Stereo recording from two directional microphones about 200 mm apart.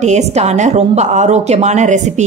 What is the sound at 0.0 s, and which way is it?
A woman's voice, 35° right (ahead or behind).